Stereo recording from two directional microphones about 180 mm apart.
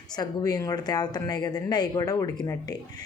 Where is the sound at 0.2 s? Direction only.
20° left (ahead or behind).